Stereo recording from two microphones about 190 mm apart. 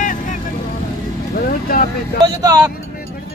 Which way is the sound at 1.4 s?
50° left (ahead or behind).